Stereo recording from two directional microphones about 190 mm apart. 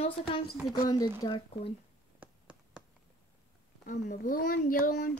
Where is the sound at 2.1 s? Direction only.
5° right (ahead or behind).